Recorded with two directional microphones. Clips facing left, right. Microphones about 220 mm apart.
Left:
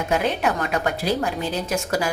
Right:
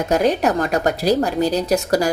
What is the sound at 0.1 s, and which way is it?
A woman's voice, 40° right (ahead or behind).